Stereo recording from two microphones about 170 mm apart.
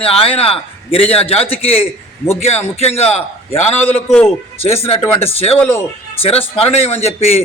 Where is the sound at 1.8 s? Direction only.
15° left (ahead or behind).